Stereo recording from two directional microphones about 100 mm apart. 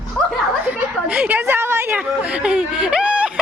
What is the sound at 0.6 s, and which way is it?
A woman's voice, 15° right (ahead or behind).